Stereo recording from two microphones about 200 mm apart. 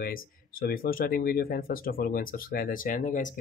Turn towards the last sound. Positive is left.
turn(degrees=40)  # may be behind; listen again after turning